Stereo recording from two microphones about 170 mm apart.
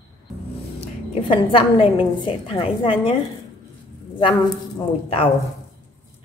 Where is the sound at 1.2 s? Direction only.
30° left (ahead or behind).